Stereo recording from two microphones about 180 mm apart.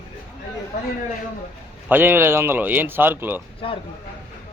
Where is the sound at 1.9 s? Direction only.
10° right (ahead or behind).